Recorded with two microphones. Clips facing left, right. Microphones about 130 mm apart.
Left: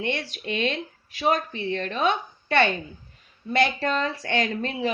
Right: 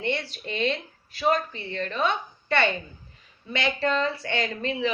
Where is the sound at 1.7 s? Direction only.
55° left (ahead or behind).